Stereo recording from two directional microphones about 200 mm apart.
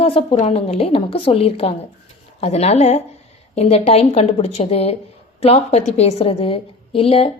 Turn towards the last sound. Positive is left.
turn(degrees=30)  # may be behind; listen again after turning